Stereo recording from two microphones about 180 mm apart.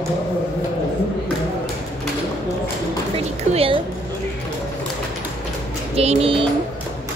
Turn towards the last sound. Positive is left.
turn(degrees=-30)  # may be behind; listen again after turning